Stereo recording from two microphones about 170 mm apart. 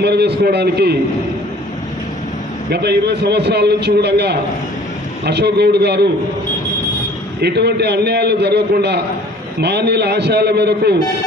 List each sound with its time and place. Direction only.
0.0 s a man's voice: 75° right (ahead or behind)
2.7 s a man's voice: 75° right (ahead or behind)
7.4 s a man's voice: 75° right (ahead or behind)